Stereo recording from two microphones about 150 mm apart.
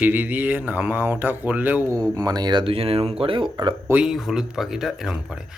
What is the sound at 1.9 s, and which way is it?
Speech, 25° right (ahead or behind).